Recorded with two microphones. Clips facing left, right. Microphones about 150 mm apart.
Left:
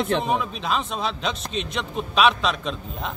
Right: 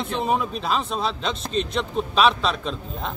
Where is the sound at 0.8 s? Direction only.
30° right (ahead or behind).